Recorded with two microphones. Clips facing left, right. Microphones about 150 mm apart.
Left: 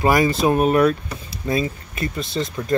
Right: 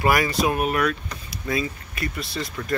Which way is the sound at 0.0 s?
25° left (ahead or behind).